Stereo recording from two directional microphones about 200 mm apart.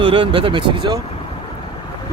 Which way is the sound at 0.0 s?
25° right (ahead or behind).